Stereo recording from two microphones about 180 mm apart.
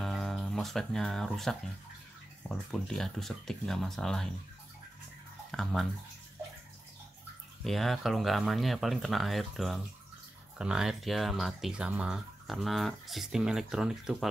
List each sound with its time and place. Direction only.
0.0 s speech: centre (ahead or behind)
5.5 s speech: centre (ahead or behind)
7.6 s speech: centre (ahead or behind)